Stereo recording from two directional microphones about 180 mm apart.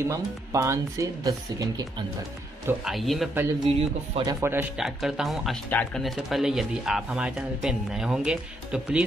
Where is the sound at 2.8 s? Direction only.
Centre (ahead or behind).